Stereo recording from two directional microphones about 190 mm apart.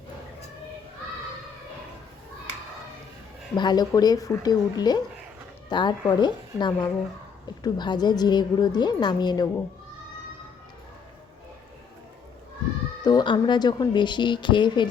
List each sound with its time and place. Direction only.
3.5 s a woman's voice: 25° left (ahead or behind)
13.0 s a woman's voice: 20° left (ahead or behind)